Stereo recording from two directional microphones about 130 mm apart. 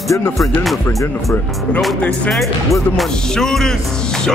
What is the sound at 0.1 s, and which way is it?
Speech, 25° left (ahead or behind).